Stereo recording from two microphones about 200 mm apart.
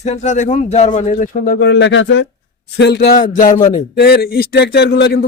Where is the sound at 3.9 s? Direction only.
50° left (ahead or behind).